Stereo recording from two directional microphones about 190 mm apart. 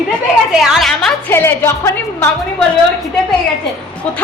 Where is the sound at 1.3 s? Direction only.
15° left (ahead or behind).